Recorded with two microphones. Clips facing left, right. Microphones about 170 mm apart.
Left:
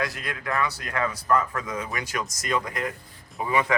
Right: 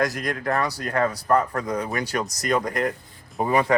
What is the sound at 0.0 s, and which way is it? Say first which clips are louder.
Speech: right 6 dB; 40° right (ahead or behind).